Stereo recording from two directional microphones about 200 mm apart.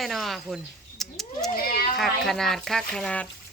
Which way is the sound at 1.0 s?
Centre (ahead or behind).